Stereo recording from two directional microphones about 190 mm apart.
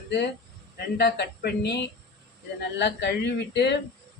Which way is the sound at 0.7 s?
60° left (ahead or behind).